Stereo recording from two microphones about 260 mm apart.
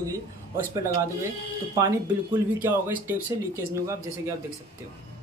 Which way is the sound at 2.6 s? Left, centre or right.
Centre.